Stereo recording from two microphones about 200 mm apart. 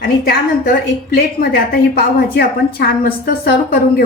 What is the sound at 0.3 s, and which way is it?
A woman's voice, 50° left (ahead or behind).